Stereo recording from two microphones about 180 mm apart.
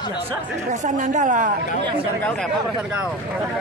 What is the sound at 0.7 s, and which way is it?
Speech, 45° right (ahead or behind).